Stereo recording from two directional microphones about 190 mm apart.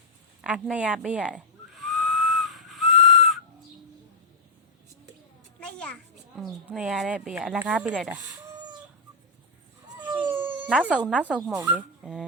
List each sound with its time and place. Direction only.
0.4 s whistling: 5° right (ahead or behind)
5.5 s a child's voice: 5° left (ahead or behind)
8.0 s a sound: 20° right (ahead or behind)
10.0 s dog: 10° right (ahead or behind)
11.3 s speech: 5° right (ahead or behind)